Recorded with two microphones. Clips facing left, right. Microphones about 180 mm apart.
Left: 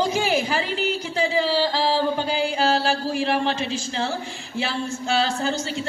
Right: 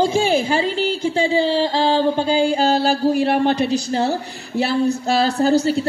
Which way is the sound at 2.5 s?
35° right (ahead or behind).